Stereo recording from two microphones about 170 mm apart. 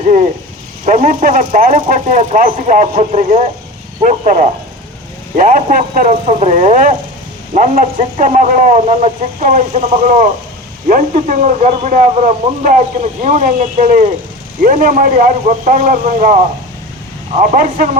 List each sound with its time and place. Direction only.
0.9 s speech: 45° right (ahead or behind)
2.9 s speech: 35° right (ahead or behind)